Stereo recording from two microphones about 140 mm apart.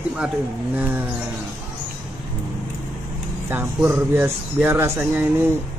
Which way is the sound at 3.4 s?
15° right (ahead or behind).